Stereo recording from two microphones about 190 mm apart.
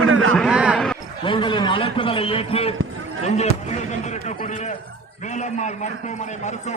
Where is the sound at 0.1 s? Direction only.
90° right.